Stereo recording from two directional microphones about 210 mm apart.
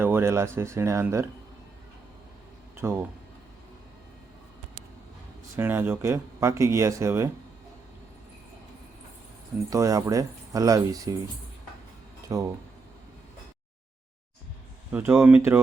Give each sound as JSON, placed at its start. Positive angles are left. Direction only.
{"t": 0.0, "sound": "speech", "side_deg": -10}
{"t": 2.7, "sound": "speech", "side_deg": -10}
{"t": 5.5, "sound": "speech", "side_deg": -10}
{"t": 9.6, "sound": "speech", "side_deg": -15}
{"t": 12.3, "sound": "speech", "side_deg": -15}
{"t": 14.9, "sound": "speech", "side_deg": -10}